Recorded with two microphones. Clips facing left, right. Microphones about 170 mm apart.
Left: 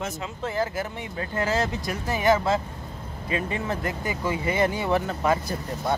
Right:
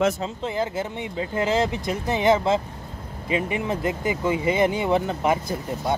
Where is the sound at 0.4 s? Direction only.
20° right (ahead or behind).